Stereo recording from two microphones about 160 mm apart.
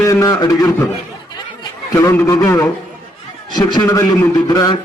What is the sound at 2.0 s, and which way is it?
A man's voice, 20° left (ahead or behind).